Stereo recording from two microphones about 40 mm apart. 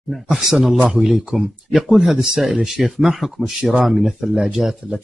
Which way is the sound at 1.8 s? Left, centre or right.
Centre.